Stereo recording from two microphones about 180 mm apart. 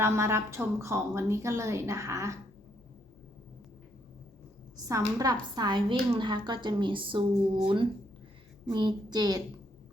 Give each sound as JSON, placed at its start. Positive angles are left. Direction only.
{"t": 0.0, "sound": "a woman's voice", "side_deg": -15}
{"t": 4.9, "sound": "a woman's voice", "side_deg": -20}
{"t": 8.7, "sound": "a woman's voice", "side_deg": -25}